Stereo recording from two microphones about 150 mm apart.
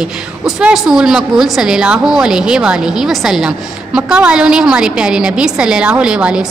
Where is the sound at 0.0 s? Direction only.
5° right (ahead or behind).